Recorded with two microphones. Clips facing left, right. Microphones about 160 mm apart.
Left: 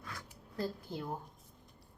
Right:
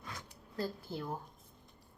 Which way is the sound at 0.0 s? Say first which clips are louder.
Even; 20° right (ahead or behind).